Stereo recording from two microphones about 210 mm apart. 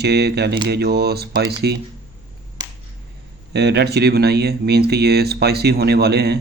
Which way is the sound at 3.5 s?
50° right (ahead or behind).